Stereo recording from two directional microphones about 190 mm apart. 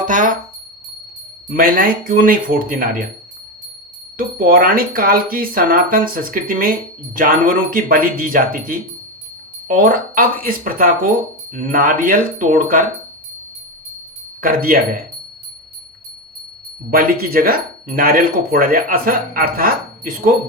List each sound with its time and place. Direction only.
0.0 s music: 45° right (ahead or behind)
1.5 s speech: 50° right (ahead or behind)
4.2 s speech: 50° right (ahead or behind)
14.4 s speech: 50° right (ahead or behind)
16.9 s speech: 50° right (ahead or behind)